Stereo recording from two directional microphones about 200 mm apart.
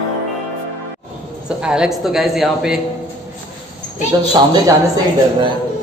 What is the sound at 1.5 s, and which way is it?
A man's voice, 5° right (ahead or behind).